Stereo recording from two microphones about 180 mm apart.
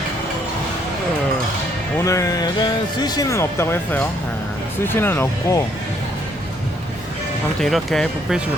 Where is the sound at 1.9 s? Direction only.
15° left (ahead or behind).